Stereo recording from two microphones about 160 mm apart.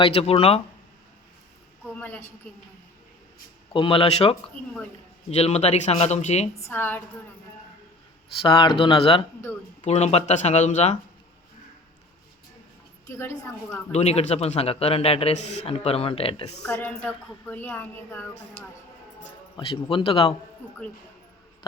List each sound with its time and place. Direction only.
0.0 s a man's voice: 35° left (ahead or behind)
2.0 s a woman's voice: 10° left (ahead or behind)
3.7 s a man's voice: 35° left (ahead or behind)
6.7 s a woman's voice: 10° left (ahead or behind)
8.4 s a man's voice: 30° left (ahead or behind); by 10.9 s 45° left (ahead or behind)
13.1 s a woman's voice: 15° left (ahead or behind)
13.9 s a man's voice: 40° left (ahead or behind)
16.7 s a woman's voice: 10° left (ahead or behind)
19.5 s a man's voice: 30° left (ahead or behind)
20.6 s a woman's voice: 10° left (ahead or behind)